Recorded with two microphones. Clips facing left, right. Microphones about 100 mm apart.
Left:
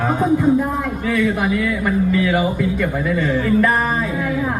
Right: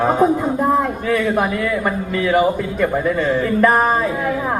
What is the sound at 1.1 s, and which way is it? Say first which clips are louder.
A man's voice: left 1 dB; 40° right (ahead or behind).